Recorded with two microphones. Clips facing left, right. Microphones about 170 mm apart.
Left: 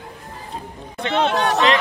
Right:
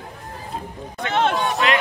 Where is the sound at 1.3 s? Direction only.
75° left (ahead or behind).